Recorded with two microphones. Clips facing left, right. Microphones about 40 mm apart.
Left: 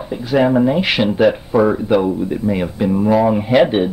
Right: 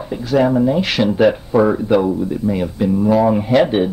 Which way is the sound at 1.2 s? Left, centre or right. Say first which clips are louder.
Even; centre.